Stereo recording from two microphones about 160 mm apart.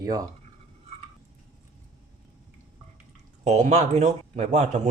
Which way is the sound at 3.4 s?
45° right (ahead or behind).